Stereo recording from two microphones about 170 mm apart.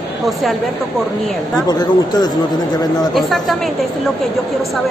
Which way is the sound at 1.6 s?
25° left (ahead or behind).